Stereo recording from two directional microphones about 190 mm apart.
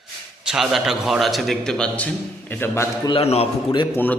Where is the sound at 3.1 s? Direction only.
30° left (ahead or behind).